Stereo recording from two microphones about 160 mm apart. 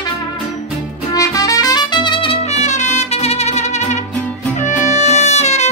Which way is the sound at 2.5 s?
45° left (ahead or behind).